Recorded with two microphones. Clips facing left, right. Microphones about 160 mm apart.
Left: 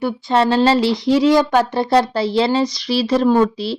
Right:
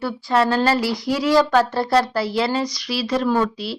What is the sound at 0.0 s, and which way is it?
A woman's voice, 20° left (ahead or behind).